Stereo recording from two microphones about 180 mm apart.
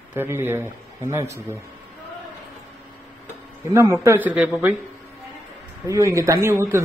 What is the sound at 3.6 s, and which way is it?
Speech, 15° right (ahead or behind).